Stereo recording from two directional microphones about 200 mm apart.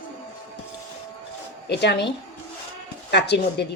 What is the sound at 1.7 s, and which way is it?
A woman's voice, 55° left (ahead or behind).